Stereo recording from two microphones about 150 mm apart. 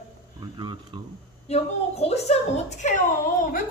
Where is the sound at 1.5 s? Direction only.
45° left (ahead or behind).